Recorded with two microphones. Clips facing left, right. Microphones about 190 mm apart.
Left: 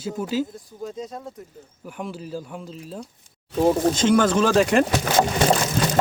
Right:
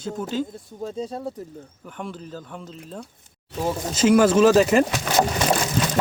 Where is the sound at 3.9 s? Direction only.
5° right (ahead or behind).